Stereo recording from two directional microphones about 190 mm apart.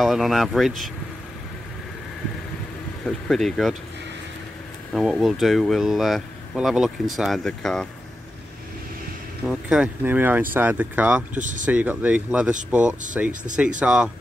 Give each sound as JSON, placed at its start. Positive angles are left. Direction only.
{"t": 0.0, "sound": "speech", "side_deg": 0}
{"t": 3.1, "sound": "speech", "side_deg": 0}
{"t": 4.9, "sound": "speech", "side_deg": 0}
{"t": 9.5, "sound": "speech", "side_deg": -5}
{"t": 11.3, "sound": "speech", "side_deg": -40}
{"t": 11.6, "sound": "speech", "side_deg": -10}